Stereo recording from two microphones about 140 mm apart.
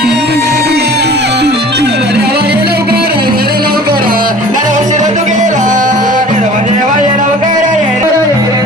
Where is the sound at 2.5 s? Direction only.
90° right; by 7.8 s 65° right (ahead or behind).